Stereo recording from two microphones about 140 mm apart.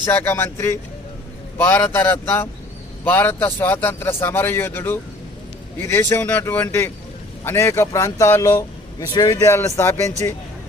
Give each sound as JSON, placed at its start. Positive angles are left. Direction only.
{"t": 0.1, "sound": "a man's voice", "side_deg": 15}